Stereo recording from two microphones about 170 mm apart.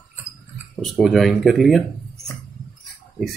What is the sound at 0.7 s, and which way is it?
Speech, centre (ahead or behind).